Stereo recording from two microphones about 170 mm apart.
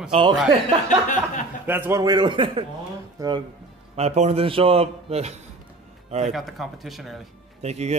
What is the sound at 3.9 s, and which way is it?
Speech, 40° right (ahead or behind).